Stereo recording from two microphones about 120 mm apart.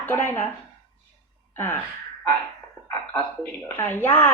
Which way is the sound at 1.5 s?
20° left (ahead or behind).